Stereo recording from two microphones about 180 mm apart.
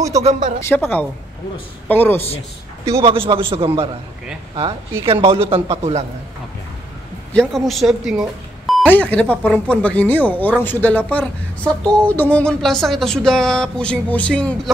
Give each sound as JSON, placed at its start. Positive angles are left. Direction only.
{"t": 0.2, "sound": "a man's voice", "side_deg": -40}
{"t": 0.6, "sound": "speech", "side_deg": 10}
{"t": 3.0, "sound": "a man's voice", "side_deg": -30}
{"t": 5.0, "sound": "a man's voice", "side_deg": -30}
{"t": 7.3, "sound": "speech", "side_deg": 0}
{"t": 8.1, "sound": "a sound", "side_deg": 0}
{"t": 8.8, "sound": "speech", "side_deg": 10}